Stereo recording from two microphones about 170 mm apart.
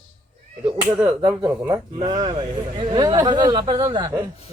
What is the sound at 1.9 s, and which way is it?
A man's voice, 25° right (ahead or behind).